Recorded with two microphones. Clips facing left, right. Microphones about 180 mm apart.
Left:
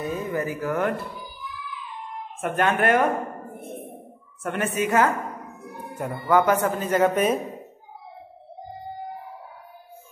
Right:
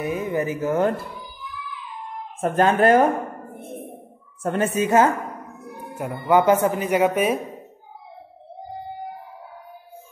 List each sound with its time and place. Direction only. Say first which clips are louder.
0.0 s speech: right 3 dB; 15° right (ahead or behind)
2.4 s speech: right 5 dB; 35° right (ahead or behind)
4.4 s speech: right 4 dB; 30° right (ahead or behind)
6.1 s speech: right 3 dB; 20° right (ahead or behind)